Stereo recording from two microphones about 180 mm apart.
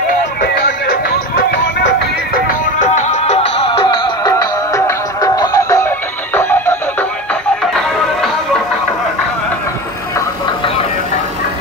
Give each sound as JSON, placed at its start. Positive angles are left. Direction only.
{"t": 0.4, "sound": "music", "side_deg": 60}
{"t": 2.3, "sound": "music", "side_deg": 50}